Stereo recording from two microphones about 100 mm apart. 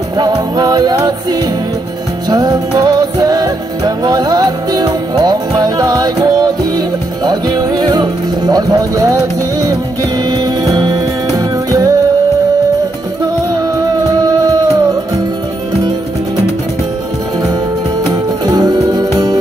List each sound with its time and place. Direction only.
0.2 s music: 45° right (ahead or behind)
10.3 s music: 40° right (ahead or behind)
14.2 s music: 40° right (ahead or behind)
18.4 s music: 40° right (ahead or behind)